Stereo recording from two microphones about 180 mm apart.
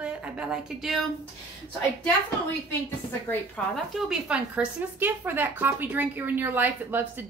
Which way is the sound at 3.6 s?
5° left (ahead or behind).